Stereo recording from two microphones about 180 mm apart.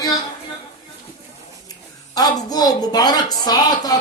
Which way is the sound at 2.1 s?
20° left (ahead or behind).